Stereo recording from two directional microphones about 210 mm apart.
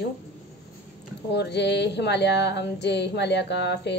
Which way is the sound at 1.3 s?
55° left (ahead or behind).